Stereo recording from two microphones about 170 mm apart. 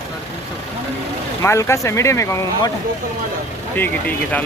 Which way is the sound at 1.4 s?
15° left (ahead or behind).